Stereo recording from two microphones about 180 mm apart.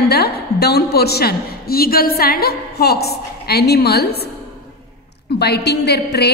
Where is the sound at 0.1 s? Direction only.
60° left (ahead or behind).